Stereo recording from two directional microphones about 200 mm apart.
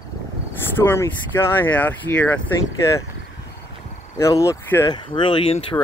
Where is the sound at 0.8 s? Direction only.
10° left (ahead or behind).